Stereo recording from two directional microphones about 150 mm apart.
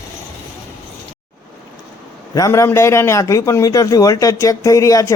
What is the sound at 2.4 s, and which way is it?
A man's voice, 20° left (ahead or behind).